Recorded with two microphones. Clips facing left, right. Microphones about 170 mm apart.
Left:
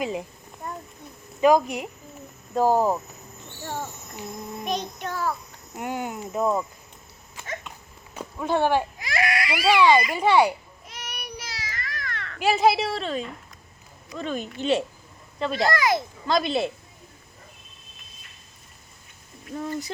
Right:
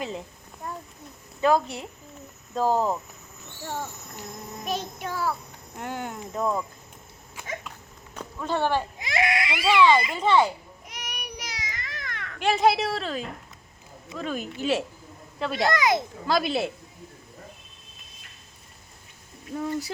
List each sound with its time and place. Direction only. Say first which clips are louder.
0.0 s speech: left 4 dB; 15° left (ahead or behind)
1.4 s speech: left 4 dB; 15° left (ahead or behind)
4.6 s child singing: left 1 dB; 5° right (ahead or behind)
5.7 s speech: left 3 dB; 10° left (ahead or behind)
7.3 s dog: even; 10° right (ahead or behind)
8.1 s speech: left 4 dB; 10° left (ahead or behind)
9.0 s baby cry: even; 20° right (ahead or behind)
9.7 s speech: even; 15° left (ahead or behind)
10.8 s children playing: left 1 dB; 15° right (ahead or behind)
12.4 s speech: left 1 dB; 5° left (ahead or behind)
15.7 s a child's voice: even; 20° right (ahead or behind)
16.2 s speech: left 3 dB; 5° right (ahead or behind)
19.5 s child singing: right 1 dB; 10° right (ahead or behind)